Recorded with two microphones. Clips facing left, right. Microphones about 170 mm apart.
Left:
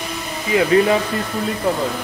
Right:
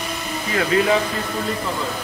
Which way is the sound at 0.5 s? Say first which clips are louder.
Left 6 dB; 20° left (ahead or behind).